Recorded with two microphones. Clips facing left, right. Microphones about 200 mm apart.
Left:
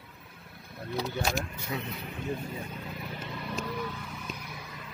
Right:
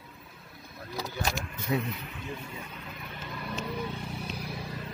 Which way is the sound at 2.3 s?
40° left (ahead or behind).